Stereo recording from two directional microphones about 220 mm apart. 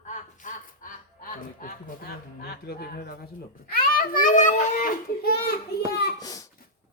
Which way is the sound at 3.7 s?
40° left (ahead or behind).